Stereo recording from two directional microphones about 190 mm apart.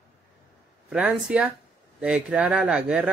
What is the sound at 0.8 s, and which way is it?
Speech, 5° right (ahead or behind).